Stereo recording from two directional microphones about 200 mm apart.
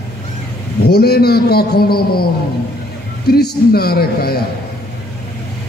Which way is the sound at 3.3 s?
50° left (ahead or behind).